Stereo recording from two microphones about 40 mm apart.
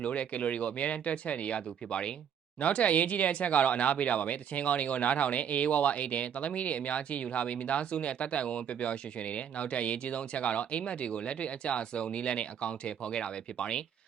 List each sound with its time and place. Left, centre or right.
0.0 s speech: left